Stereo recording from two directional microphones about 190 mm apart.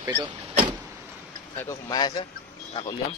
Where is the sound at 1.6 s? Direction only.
15° left (ahead or behind).